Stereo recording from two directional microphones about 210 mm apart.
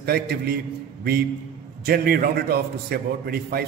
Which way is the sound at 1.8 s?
45° right (ahead or behind).